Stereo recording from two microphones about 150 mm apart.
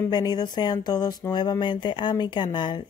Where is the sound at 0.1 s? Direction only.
30° left (ahead or behind).